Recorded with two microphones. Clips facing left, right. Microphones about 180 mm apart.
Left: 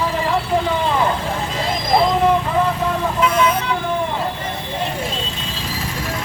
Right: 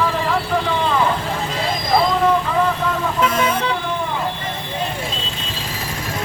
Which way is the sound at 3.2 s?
45° right (ahead or behind).